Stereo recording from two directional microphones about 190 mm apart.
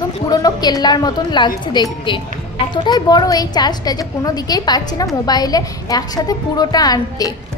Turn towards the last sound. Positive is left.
turn(degrees=20)  # may be behind; listen again after turning